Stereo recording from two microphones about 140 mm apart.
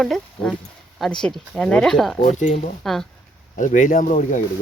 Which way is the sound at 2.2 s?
60° left (ahead or behind).